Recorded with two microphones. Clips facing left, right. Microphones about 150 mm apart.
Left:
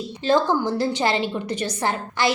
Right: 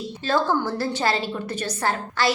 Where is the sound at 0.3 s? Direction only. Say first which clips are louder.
Left 3 dB; 15° left (ahead or behind).